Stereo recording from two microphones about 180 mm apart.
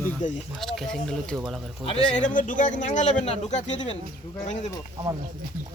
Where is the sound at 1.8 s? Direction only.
45° left (ahead or behind).